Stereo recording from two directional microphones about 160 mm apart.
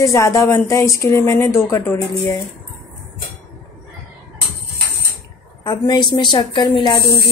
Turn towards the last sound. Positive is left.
turn(degrees=30)  # may be behind; listen again after turning